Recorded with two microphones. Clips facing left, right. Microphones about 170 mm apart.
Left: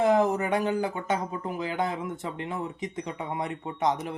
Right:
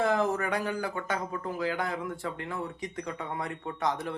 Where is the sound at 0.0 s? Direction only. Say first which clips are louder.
Left 4 dB; 20° left (ahead or behind).